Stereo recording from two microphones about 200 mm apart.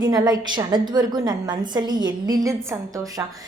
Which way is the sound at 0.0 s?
20° right (ahead or behind).